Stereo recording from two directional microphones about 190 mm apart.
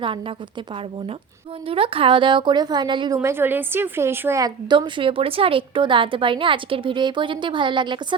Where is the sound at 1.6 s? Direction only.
30° right (ahead or behind).